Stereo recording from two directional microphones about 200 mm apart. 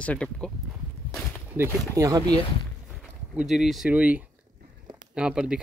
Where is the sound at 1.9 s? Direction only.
15° right (ahead or behind).